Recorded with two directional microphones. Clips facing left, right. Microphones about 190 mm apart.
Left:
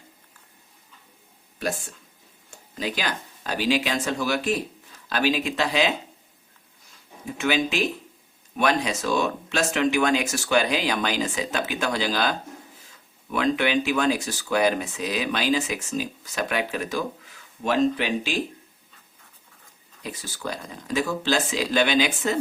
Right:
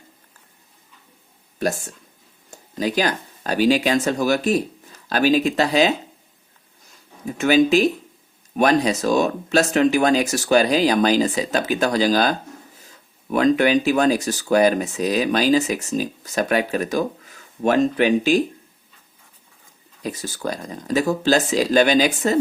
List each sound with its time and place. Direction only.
2.5 s speech: 40° right (ahead or behind)
7.3 s speech: 40° right (ahead or behind)
20.0 s speech: 40° right (ahead or behind)